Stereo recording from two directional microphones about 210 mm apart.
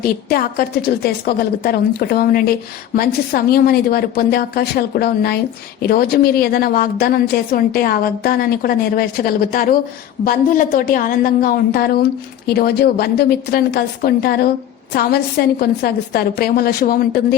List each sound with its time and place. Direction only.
0.0 s a woman's voice: 45° left (ahead or behind)